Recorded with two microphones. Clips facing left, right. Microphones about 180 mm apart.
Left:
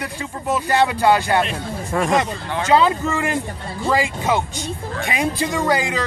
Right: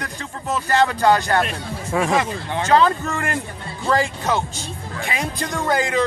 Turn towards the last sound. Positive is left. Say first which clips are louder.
# even
turn(degrees=0)  # may be behind; listen again after turning